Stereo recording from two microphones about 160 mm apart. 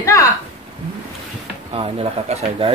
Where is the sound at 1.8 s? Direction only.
40° right (ahead or behind).